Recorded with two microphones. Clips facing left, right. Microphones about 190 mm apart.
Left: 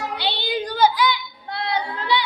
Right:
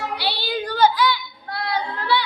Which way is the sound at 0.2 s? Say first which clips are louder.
Left 1 dB; 20° left (ahead or behind).